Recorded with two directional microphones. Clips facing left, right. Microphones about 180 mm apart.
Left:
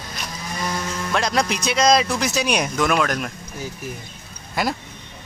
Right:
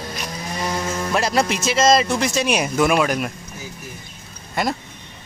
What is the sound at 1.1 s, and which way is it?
Speech, 5° right (ahead or behind).